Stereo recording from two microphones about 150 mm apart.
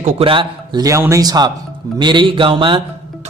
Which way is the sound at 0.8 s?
20° right (ahead or behind).